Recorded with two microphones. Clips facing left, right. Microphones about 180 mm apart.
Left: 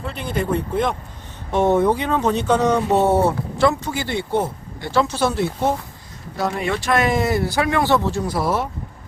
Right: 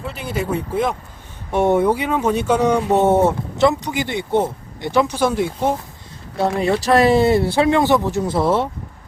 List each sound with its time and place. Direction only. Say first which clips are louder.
0.0 s speech: even; 5° right (ahead or behind)
6.3 s speech: right 4 dB; 30° right (ahead or behind)